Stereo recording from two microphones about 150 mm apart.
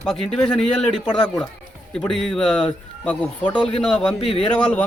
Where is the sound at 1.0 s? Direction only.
30° left (ahead or behind).